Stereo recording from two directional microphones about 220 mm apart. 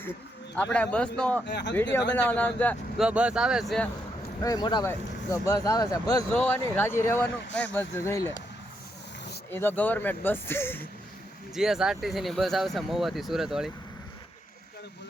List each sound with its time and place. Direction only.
0.5 s speech: 5° left (ahead or behind)
1.5 s speech: 50° left (ahead or behind)
1.7 s speech: 5° left (ahead or behind)
3.0 s speech: 5° right (ahead or behind)
4.4 s speech: 20° left (ahead or behind)
9.5 s speech: 10° left (ahead or behind)
11.5 s speech: centre (ahead or behind)